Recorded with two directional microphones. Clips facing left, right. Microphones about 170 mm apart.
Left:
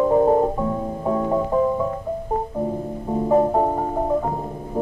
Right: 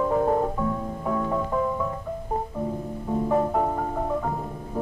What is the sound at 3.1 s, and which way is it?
Music, 30° left (ahead or behind).